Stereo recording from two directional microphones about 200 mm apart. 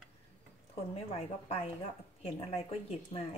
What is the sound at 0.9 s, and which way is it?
A woman's voice, 30° left (ahead or behind).